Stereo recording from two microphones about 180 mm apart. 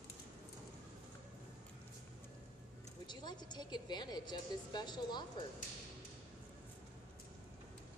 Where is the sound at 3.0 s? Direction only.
25° left (ahead or behind).